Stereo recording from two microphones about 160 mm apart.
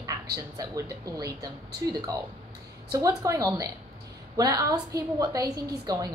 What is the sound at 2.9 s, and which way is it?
A woman's voice, 20° right (ahead or behind).